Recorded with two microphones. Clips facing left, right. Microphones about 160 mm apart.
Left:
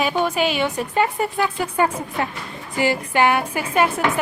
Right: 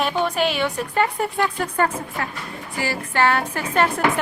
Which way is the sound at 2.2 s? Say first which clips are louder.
Left 3 dB; 20° left (ahead or behind).